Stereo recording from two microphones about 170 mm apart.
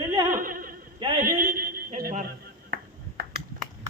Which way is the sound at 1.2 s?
55° right (ahead or behind).